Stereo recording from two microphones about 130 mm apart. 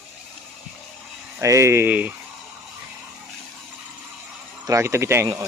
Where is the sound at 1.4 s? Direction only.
20° right (ahead or behind).